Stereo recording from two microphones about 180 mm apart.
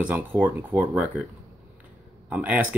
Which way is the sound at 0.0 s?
10° right (ahead or behind).